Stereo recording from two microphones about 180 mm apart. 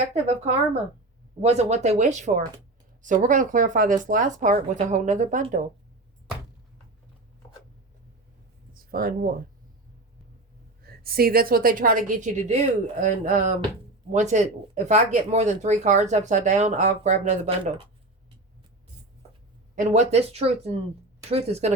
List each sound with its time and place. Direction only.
0.1 s a woman's voice: 35° right (ahead or behind)
8.7 s speech: 55° right (ahead or behind)
10.8 s a woman's voice: 55° right (ahead or behind); by 17.5 s 40° right (ahead or behind)
19.7 s speech: 40° right (ahead or behind)